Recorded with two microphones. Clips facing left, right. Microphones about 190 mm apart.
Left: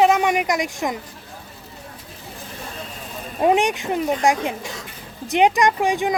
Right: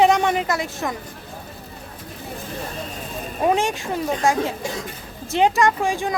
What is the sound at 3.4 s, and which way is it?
Speech, 20° left (ahead or behind).